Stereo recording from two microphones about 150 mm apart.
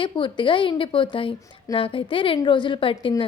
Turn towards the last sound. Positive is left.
turn(degrees=35)  # may be behind; listen again after turning